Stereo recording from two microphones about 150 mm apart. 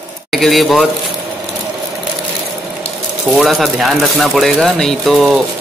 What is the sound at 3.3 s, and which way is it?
A man's voice, centre (ahead or behind).